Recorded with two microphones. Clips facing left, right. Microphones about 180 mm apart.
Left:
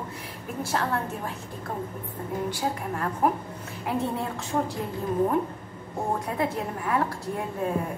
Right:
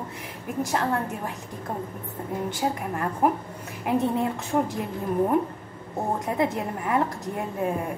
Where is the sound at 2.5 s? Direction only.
15° right (ahead or behind).